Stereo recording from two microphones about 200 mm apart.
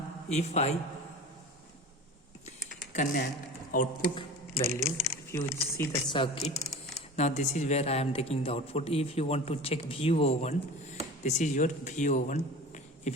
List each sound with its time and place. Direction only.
0.3 s speech: 35° left (ahead or behind)
2.9 s speech: 40° left (ahead or behind)
4.1 s a sound: 30° left (ahead or behind)
4.9 s speech: 15° left (ahead or behind)
6.1 s speech: 30° left (ahead or behind)